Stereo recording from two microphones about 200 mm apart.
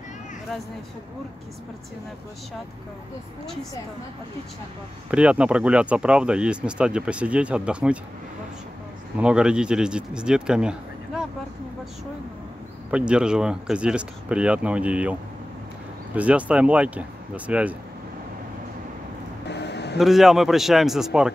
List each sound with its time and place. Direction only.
5.1 s speech: 5° right (ahead or behind)
9.2 s speech: 5° right (ahead or behind)
12.9 s speech: 5° right (ahead or behind)
16.2 s speech: 5° right (ahead or behind)
19.4 s a sound: 55° left (ahead or behind)
20.0 s speech: centre (ahead or behind)